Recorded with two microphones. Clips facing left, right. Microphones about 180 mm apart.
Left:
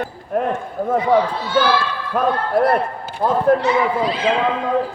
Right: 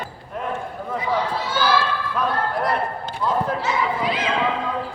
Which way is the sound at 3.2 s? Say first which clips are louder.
Left 5 dB; 55° left (ahead or behind).